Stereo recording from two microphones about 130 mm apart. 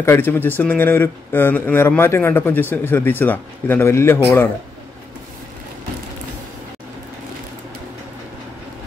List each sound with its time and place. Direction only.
0.0 s speech: 20° left (ahead or behind)